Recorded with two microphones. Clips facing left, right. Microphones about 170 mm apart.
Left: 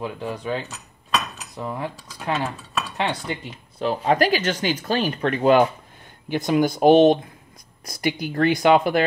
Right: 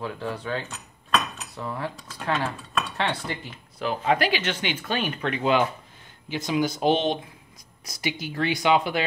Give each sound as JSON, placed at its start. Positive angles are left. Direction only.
{"t": 0.0, "sound": "speech", "side_deg": 15}
{"t": 3.8, "sound": "speech", "side_deg": 35}